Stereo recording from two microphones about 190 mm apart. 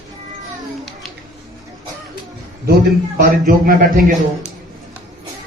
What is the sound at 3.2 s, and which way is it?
Speech, 50° right (ahead or behind).